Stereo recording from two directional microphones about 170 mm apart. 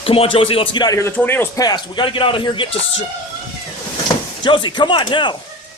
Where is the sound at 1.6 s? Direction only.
25° left (ahead or behind).